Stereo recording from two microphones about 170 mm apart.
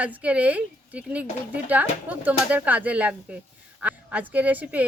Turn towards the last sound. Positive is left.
turn(degrees=-10)  # may be behind; listen again after turning